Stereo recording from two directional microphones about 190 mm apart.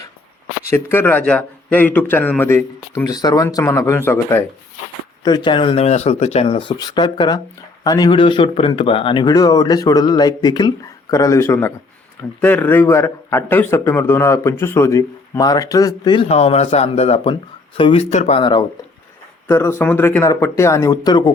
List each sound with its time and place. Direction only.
0.7 s a man's voice: 10° left (ahead or behind)
16.3 s speech: 35° left (ahead or behind)
19.5 s a man's voice: 15° left (ahead or behind)